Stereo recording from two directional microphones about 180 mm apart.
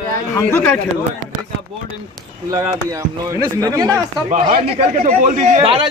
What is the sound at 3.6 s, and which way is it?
Speech, 20° right (ahead or behind).